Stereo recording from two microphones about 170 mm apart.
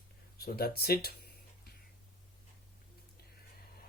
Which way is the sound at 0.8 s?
65° left (ahead or behind).